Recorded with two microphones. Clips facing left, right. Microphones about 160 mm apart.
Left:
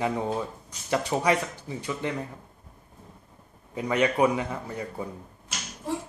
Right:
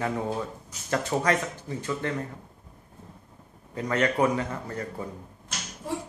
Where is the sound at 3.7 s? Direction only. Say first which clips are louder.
Left 1 dB; 15° left (ahead or behind).